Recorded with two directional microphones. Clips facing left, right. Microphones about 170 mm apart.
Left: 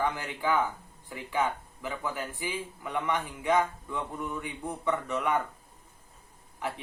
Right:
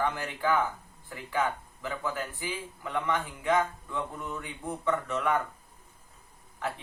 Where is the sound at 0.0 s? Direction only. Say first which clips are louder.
Even; 15° left (ahead or behind).